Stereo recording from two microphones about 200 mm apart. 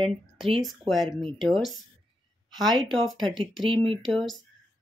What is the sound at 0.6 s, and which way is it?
Speech, centre (ahead or behind).